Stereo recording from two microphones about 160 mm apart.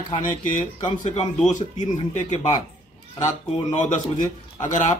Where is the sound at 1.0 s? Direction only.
50° left (ahead or behind).